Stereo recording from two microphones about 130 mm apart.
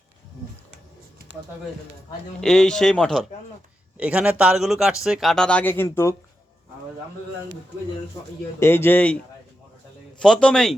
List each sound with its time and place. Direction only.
2.4 s speech: 5° left (ahead or behind)
3.9 s speech: 10° right (ahead or behind); by 6.1 s 20° left (ahead or behind)
8.5 s speech: 20° left (ahead or behind)
10.2 s speech: 5° left (ahead or behind)